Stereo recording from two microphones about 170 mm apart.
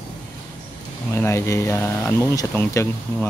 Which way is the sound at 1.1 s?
15° left (ahead or behind).